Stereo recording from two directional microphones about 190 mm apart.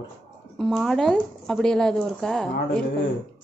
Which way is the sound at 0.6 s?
Centre (ahead or behind).